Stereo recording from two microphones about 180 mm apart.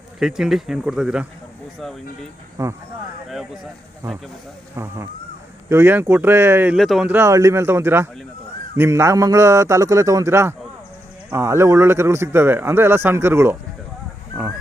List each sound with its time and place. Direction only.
0.2 s speech: 5° right (ahead or behind)
2.6 s speech: 20° right (ahead or behind)
3.2 s speech: centre (ahead or behind)
5.6 s speech: 15° right (ahead or behind)
6.7 s speech: centre (ahead or behind)